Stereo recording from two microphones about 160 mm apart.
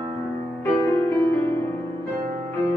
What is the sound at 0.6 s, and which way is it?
Music, 10° left (ahead or behind).